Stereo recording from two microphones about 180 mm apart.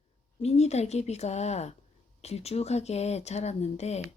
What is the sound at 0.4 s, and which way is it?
Speech, 35° left (ahead or behind).